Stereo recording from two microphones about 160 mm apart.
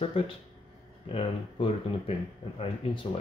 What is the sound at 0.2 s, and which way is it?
Speech, 35° left (ahead or behind).